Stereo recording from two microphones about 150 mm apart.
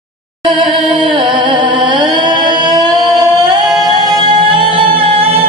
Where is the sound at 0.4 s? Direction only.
35° right (ahead or behind).